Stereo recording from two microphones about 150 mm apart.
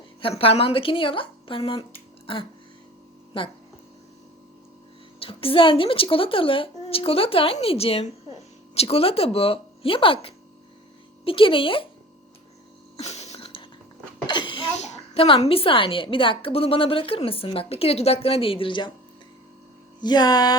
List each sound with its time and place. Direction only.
0.2 s a woman's voice: 40° left (ahead or behind)
3.3 s a woman's voice: 35° left (ahead or behind)
5.2 s a woman's voice: 40° left (ahead or behind)
13.0 s a sound: 45° left (ahead or behind)
14.3 s cough: 35° left (ahead or behind)
14.8 s a woman's voice: 45° left (ahead or behind)
20.0 s a sound: 30° left (ahead or behind)